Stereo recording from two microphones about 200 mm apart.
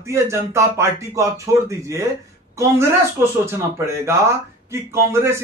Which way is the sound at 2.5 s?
15° right (ahead or behind).